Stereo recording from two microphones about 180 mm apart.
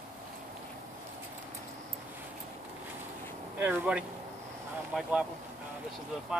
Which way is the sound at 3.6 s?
10° right (ahead or behind).